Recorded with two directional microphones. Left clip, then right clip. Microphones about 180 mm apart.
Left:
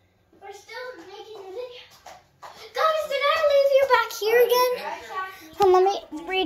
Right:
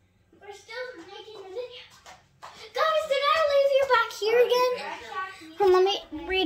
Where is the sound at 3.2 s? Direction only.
10° right (ahead or behind).